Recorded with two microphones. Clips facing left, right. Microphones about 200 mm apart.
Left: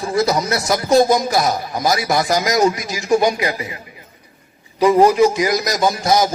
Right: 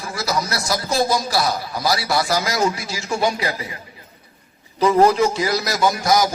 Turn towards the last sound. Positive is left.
turn(degrees=25)  # may be behind; listen again after turning